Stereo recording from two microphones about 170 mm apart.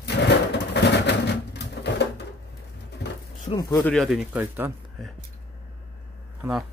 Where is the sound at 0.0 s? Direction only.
80° left.